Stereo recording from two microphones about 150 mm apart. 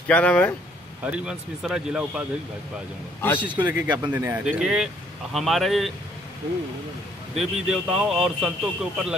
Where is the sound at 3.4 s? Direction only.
30° right (ahead or behind).